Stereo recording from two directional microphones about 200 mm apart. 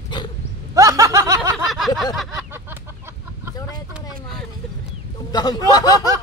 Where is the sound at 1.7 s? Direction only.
Centre (ahead or behind).